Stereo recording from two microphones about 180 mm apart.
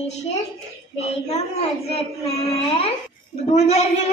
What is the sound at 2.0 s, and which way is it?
Speech, 35° left (ahead or behind).